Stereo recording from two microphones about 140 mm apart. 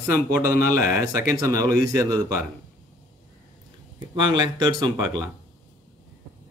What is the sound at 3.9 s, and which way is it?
Speech, 30° right (ahead or behind).